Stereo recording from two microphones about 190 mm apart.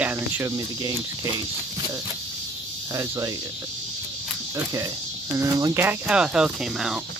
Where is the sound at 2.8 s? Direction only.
15° right (ahead or behind).